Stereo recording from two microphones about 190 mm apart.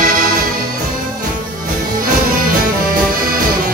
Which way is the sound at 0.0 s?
50° right (ahead or behind).